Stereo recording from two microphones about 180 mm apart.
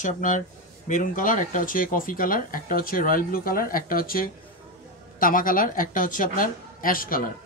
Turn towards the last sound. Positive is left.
turn(degrees=50)  # may be behind; listen again after turning